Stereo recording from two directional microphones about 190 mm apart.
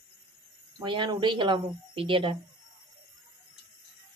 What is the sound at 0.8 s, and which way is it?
Speech, 25° right (ahead or behind).